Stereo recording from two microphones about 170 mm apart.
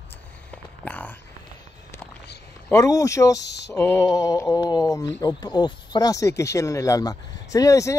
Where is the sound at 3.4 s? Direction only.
90° left.